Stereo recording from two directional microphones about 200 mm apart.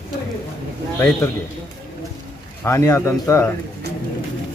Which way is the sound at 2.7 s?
15° left (ahead or behind).